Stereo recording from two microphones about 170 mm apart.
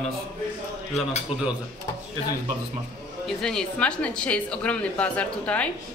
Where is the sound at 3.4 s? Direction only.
5° left (ahead or behind).